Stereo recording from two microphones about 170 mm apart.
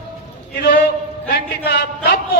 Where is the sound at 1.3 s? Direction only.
70° left (ahead or behind).